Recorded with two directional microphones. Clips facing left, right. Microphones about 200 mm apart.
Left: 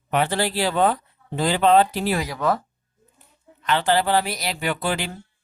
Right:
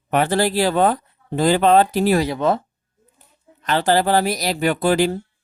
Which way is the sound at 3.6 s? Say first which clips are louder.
Right 3 dB; 40° right (ahead or behind).